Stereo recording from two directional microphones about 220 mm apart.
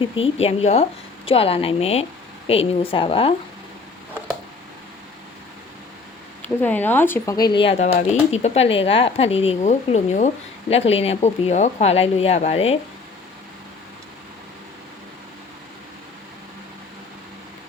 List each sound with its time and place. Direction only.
0.0 s speech: 25° left (ahead or behind)
6.6 s speech: 10° left (ahead or behind); by 12.8 s 25° left (ahead or behind)